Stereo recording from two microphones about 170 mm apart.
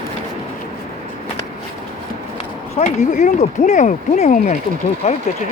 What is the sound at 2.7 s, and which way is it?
Speech, 45° left (ahead or behind).